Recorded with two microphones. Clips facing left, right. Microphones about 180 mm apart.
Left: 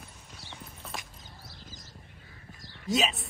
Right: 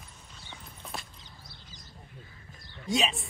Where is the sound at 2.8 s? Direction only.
Centre (ahead or behind).